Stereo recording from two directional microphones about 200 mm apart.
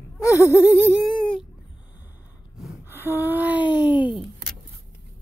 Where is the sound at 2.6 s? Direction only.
5° right (ahead or behind).